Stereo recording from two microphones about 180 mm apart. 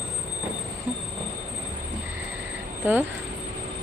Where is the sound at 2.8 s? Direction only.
10° right (ahead or behind).